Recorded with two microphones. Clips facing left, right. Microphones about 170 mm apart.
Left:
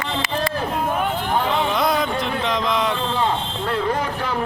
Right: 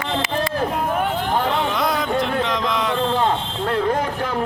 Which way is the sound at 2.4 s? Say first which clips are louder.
Left 1 dB; 20° left (ahead or behind).